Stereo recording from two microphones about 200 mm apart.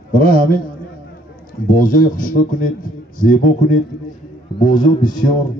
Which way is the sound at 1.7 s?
45° left (ahead or behind).